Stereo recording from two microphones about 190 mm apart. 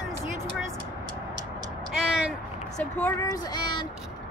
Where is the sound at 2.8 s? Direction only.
10° left (ahead or behind).